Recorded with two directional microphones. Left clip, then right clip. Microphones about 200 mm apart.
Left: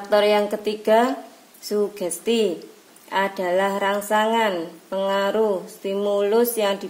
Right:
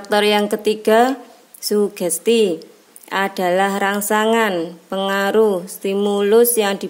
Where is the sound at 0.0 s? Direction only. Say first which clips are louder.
Right 2 dB; 50° right (ahead or behind).